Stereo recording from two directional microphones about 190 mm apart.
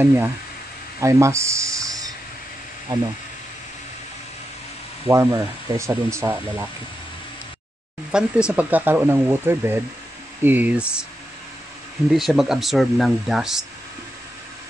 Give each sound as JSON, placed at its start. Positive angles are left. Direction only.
{"t": 0.0, "sound": "speech", "side_deg": -10}
{"t": 1.0, "sound": "a sound", "side_deg": -15}
{"t": 5.0, "sound": "speech", "side_deg": -15}
{"t": 8.1, "sound": "speech", "side_deg": -5}
{"t": 12.1, "sound": "speech", "side_deg": 0}